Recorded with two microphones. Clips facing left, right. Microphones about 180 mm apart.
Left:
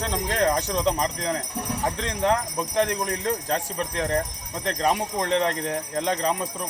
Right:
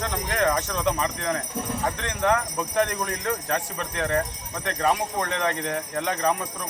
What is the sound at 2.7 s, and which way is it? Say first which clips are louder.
A man's voice: left 1 dB; 30° left (ahead or behind).